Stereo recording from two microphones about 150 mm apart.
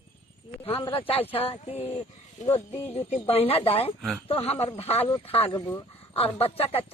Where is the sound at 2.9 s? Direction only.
40° left (ahead or behind).